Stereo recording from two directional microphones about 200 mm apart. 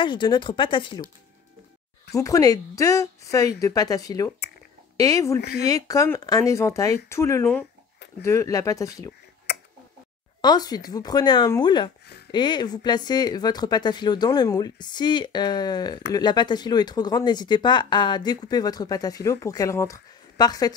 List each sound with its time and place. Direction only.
0.0 s speech: 25° left (ahead or behind)
2.1 s speech: 15° left (ahead or behind)
5.4 s speech: 55° left (ahead or behind)
5.7 s speech: 15° left (ahead or behind)
10.4 s speech: 20° left (ahead or behind)